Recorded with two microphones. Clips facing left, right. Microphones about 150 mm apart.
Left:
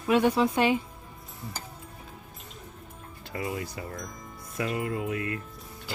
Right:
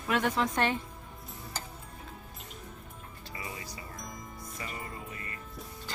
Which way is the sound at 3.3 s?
55° left (ahead or behind).